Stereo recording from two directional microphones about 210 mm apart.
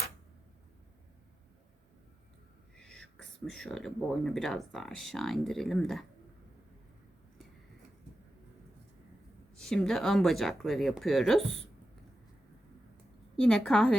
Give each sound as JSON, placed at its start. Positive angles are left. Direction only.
{"t": 2.7, "sound": "speech", "side_deg": 0}
{"t": 9.6, "sound": "speech", "side_deg": 5}
{"t": 13.3, "sound": "speech", "side_deg": 5}